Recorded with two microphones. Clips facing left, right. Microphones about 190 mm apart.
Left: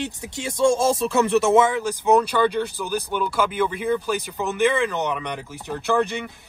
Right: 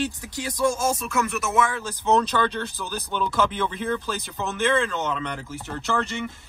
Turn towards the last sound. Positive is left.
turn(degrees=15)  # may be behind; listen again after turning